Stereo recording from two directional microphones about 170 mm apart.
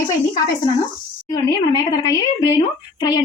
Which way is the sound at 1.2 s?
20° left (ahead or behind).